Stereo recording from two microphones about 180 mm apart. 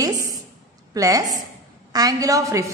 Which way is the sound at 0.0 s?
20° right (ahead or behind).